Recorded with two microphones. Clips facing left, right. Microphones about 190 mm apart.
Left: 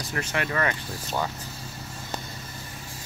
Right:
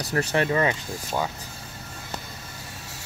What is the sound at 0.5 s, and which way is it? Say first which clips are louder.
Speech: right 4 dB; 20° right (ahead or behind).